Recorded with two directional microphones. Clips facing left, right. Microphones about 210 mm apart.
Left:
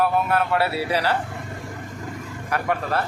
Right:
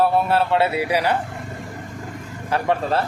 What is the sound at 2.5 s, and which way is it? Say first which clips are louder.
Speech: right 4 dB; 25° right (ahead or behind).